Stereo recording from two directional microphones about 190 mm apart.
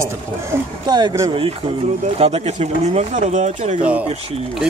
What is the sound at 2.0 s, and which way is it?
Speech, 35° right (ahead or behind).